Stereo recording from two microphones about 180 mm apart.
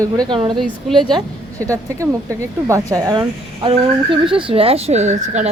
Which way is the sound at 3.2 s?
30° right (ahead or behind).